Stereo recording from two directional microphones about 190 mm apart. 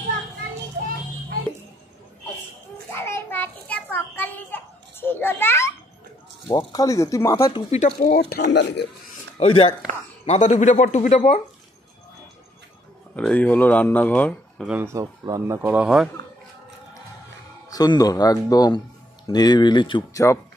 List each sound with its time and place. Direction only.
2.9 s a sound: 10° left (ahead or behind)
6.4 s speech: 20° left (ahead or behind)
7.7 s speech: 40° left (ahead or behind)
8.3 s a man's voice: 65° left (ahead or behind)
9.4 s speech: 30° left (ahead or behind)
13.1 s speech: 5° left (ahead or behind)
14.7 s speech: 10° right (ahead or behind)
17.6 s speech: 20° left (ahead or behind)